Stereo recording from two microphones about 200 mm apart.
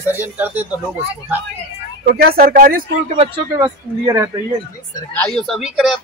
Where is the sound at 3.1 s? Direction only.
25° right (ahead or behind).